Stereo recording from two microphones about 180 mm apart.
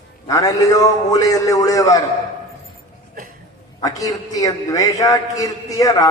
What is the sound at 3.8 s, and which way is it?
A man's voice, 20° left (ahead or behind).